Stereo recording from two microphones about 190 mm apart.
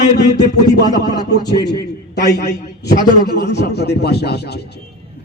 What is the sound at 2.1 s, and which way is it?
Speech, 60° left (ahead or behind).